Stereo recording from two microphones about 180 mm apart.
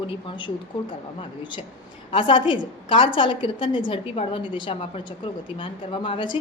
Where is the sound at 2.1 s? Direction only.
30° left (ahead or behind).